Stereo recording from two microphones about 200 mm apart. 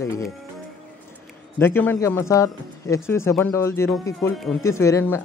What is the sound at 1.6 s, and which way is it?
Speech, 10° left (ahead or behind).